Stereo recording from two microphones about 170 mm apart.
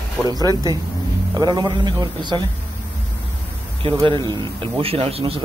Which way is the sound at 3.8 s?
30° right (ahead or behind).